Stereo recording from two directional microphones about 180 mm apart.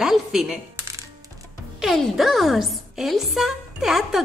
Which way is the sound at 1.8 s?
Centre (ahead or behind).